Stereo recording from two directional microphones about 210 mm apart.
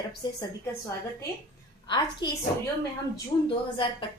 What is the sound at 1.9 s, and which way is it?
Speech, 20° left (ahead or behind).